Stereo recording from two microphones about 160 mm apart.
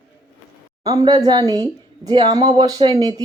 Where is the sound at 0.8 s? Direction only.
25° right (ahead or behind).